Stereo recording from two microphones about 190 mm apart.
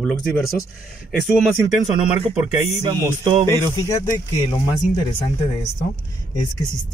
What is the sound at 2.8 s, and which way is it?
Music, 20° right (ahead or behind).